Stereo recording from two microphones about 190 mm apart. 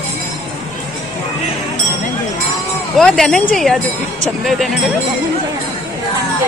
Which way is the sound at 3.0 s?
Centre (ahead or behind).